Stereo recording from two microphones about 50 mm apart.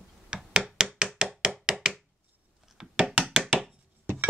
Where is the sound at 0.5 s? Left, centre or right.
Centre.